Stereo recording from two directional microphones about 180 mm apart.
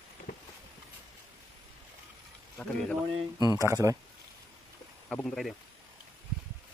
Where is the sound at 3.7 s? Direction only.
15° right (ahead or behind).